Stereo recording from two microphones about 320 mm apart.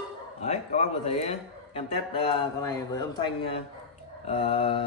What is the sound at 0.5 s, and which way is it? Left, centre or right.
A man's voice, centre.